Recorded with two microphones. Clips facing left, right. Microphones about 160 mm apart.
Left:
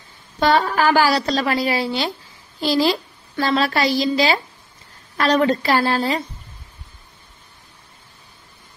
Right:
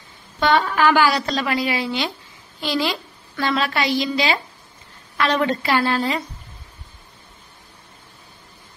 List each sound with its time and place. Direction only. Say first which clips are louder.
0.4 s a woman's voice: left 1 dB; 35° left (ahead or behind)